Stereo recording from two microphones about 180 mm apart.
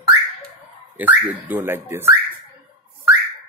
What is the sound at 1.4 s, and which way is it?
Speech, 15° right (ahead or behind).